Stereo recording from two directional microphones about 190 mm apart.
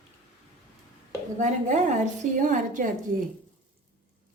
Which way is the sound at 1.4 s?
40° right (ahead or behind).